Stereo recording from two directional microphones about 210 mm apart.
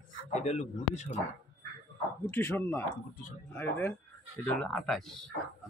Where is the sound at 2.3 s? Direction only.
10° left (ahead or behind).